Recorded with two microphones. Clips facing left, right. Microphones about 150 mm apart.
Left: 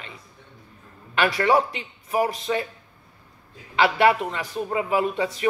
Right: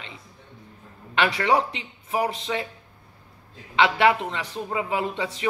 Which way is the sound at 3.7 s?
25° right (ahead or behind).